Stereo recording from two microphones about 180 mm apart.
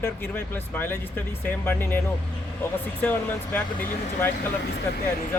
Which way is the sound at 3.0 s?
10° left (ahead or behind).